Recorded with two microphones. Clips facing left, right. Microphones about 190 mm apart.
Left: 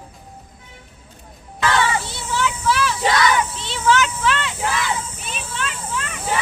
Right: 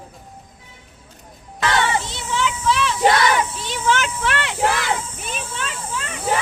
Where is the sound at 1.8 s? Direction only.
35° right (ahead or behind).